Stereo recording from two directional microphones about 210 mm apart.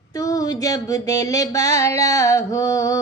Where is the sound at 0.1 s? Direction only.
15° left (ahead or behind).